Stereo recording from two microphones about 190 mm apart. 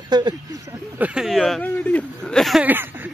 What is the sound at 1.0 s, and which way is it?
Speech, 5° right (ahead or behind).